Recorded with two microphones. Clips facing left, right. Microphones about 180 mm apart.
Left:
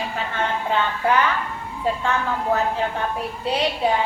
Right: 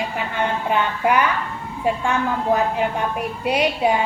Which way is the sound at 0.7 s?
15° right (ahead or behind).